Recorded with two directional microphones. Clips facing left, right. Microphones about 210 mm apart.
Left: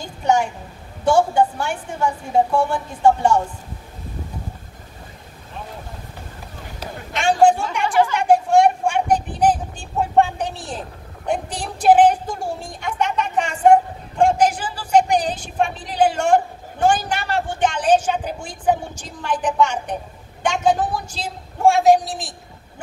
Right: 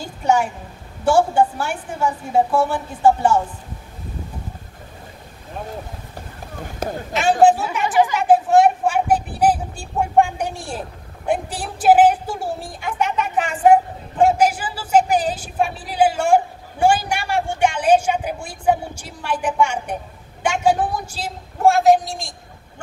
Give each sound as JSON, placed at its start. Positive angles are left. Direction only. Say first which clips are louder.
{"t": 0.0, "sound": "a woman's voice", "louder": "even", "side_deg": -10}
{"t": 6.8, "sound": "a man's voice", "louder": "right 8 dB", "side_deg": -50}
{"t": 7.2, "sound": "speech", "louder": "right 1 dB", "side_deg": -5}
{"t": 8.1, "sound": "vehicle", "louder": "right 1 dB", "side_deg": -5}
{"t": 11.2, "sound": "a woman's voice", "louder": "right 1 dB", "side_deg": -5}